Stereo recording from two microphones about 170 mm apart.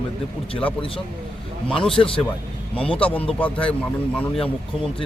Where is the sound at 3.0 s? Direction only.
10° left (ahead or behind).